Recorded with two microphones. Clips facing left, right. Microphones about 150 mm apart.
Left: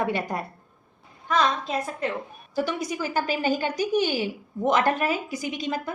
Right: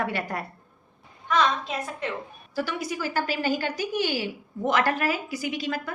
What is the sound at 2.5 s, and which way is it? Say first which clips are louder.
A woman's voice: left 2 dB; 15° left (ahead or behind).